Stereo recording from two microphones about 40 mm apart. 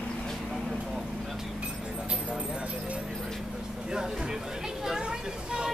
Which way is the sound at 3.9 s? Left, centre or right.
Centre.